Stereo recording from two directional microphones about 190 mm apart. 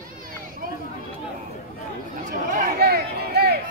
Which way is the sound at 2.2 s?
45° right (ahead or behind).